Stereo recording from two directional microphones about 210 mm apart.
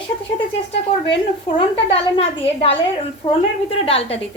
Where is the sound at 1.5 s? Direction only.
25° left (ahead or behind).